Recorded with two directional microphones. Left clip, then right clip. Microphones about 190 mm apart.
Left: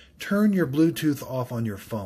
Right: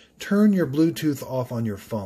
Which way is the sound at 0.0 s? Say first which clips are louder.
Right 3 dB; 20° right (ahead or behind).